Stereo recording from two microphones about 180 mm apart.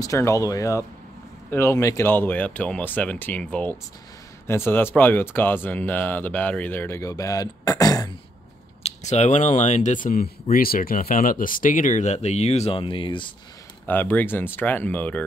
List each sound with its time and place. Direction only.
0.0 s speech: 20° left (ahead or behind)
8.8 s speech: 40° left (ahead or behind)
13.8 s speech: 10° left (ahead or behind)